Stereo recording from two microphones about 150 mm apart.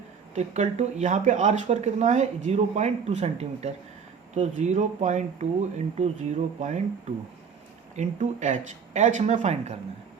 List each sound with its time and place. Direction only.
0.3 s speech: 50° right (ahead or behind)
7.9 s speech: 55° right (ahead or behind)